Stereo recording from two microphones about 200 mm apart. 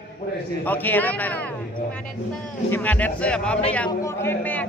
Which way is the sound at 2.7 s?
10° left (ahead or behind).